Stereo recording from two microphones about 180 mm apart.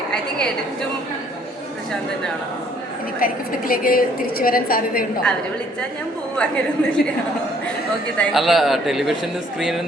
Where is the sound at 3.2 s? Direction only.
50° left (ahead or behind).